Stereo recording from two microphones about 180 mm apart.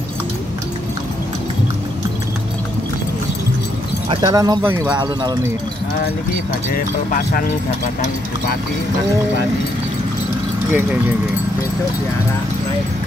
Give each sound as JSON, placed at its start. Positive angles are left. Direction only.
{"t": 4.1, "sound": "speech", "side_deg": -20}
{"t": 10.7, "sound": "speech", "side_deg": -10}